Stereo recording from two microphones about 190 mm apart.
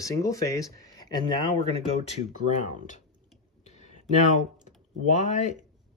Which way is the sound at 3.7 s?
35° left (ahead or behind).